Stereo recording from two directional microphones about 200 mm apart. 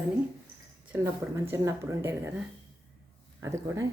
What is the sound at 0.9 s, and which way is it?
Speech, 10° right (ahead or behind).